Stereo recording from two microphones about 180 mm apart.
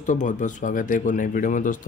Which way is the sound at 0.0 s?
45° left (ahead or behind).